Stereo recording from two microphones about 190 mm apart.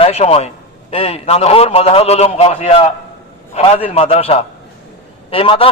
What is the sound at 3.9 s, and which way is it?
A man's voice, 30° left (ahead or behind).